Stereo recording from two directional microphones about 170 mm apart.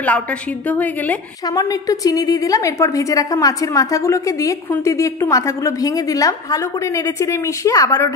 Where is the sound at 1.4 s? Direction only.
20° left (ahead or behind).